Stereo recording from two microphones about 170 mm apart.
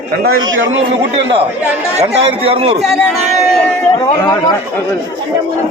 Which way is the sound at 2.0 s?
35° right (ahead or behind).